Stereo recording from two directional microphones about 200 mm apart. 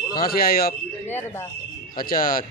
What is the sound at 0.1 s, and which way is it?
Speech, 45° left (ahead or behind).